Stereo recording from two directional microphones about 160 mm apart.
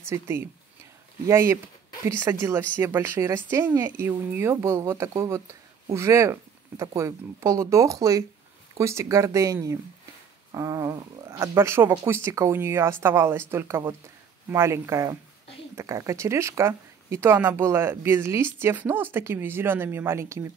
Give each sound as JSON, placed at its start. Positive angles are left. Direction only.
{"t": 0.1, "sound": "speech", "side_deg": -15}